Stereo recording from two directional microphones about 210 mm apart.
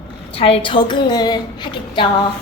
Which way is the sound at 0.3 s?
25° left (ahead or behind).